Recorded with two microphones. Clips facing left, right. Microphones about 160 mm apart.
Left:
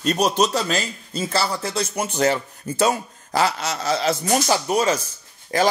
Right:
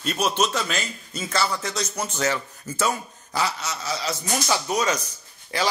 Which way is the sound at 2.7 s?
55° left (ahead or behind).